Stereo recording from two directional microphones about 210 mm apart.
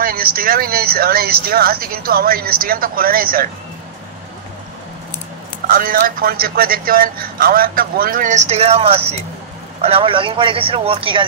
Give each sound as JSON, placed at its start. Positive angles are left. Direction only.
{"t": 0.0, "sound": "speech", "side_deg": -45}
{"t": 5.7, "sound": "speech", "side_deg": -45}